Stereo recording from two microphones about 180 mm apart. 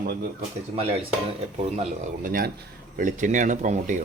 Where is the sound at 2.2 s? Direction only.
55° right (ahead or behind).